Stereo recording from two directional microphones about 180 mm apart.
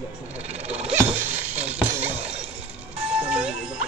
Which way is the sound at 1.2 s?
10° right (ahead or behind).